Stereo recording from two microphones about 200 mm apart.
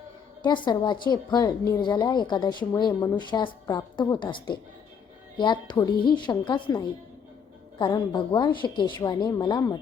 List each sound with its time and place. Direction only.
0.4 s a woman's voice: 20° left (ahead or behind)